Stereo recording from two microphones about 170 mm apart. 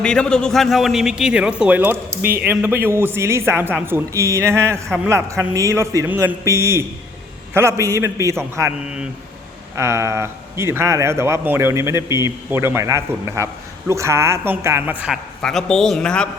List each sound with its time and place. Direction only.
0.0 s a man's voice: 5° left (ahead or behind); by 8.7 s 15° right (ahead or behind)
9.7 s a man's voice: 15° right (ahead or behind)
15.4 s a man's voice: 5° left (ahead or behind)